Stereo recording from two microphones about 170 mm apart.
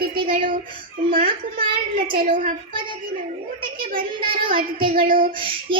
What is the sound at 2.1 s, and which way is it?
Child singing, 50° right (ahead or behind).